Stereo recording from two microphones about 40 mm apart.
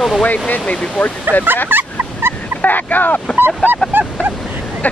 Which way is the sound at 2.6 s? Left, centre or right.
Left.